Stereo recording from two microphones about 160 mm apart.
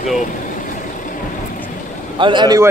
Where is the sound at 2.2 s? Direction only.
30° right (ahead or behind).